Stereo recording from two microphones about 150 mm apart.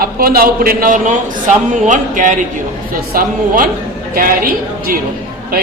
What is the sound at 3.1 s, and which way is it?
Speech, 75° right (ahead or behind).